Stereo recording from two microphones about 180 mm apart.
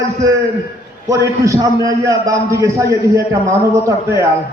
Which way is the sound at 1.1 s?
15° right (ahead or behind).